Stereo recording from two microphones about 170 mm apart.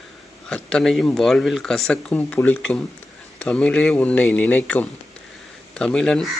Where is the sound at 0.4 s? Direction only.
5° left (ahead or behind).